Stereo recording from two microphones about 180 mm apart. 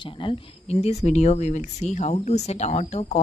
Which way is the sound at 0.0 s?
30° left (ahead or behind).